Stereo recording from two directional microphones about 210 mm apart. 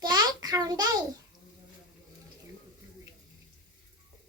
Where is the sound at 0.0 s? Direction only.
20° right (ahead or behind).